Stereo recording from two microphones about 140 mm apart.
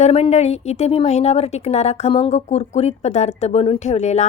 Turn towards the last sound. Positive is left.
turn(degrees=55)  # may be behind; listen again after turning